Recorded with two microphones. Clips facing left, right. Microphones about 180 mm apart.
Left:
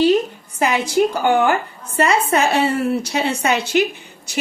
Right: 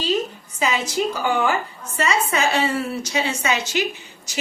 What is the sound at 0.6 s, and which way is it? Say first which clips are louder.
A woman's voice: left 5 dB; 60° left (ahead or behind).